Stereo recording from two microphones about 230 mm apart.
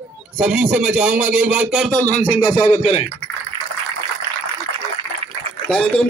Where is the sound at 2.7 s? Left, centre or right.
Left.